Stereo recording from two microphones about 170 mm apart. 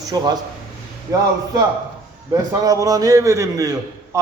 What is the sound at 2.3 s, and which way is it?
A man's voice, 20° right (ahead or behind).